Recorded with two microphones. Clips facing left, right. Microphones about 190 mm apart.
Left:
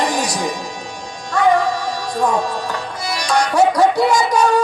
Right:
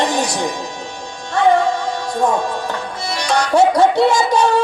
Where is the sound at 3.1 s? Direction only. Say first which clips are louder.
Right 1 dB; 25° right (ahead or behind).